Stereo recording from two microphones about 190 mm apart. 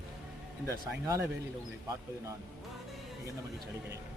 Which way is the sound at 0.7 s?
15° right (ahead or behind).